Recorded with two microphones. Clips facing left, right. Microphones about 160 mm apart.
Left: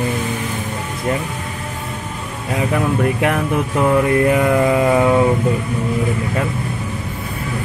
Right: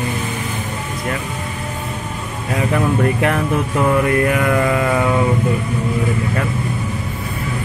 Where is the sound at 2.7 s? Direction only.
10° left (ahead or behind).